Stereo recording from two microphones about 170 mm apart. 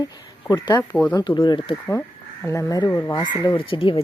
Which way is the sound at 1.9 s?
15° left (ahead or behind).